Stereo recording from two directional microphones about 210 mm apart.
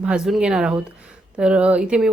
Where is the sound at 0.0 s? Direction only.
5° right (ahead or behind).